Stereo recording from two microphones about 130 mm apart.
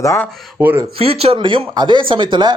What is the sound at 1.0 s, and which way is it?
Speech, 50° right (ahead or behind).